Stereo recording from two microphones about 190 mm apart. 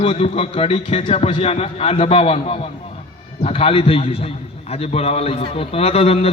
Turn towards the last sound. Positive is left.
turn(degrees=30)  # may be behind; listen again after turning